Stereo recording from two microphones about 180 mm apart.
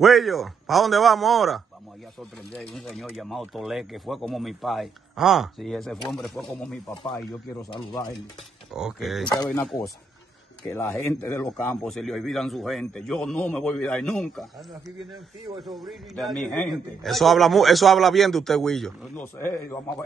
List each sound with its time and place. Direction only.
0.0 s speech: centre (ahead or behind)
7.7 s speech: 25° left (ahead or behind)
8.7 s speech: centre (ahead or behind)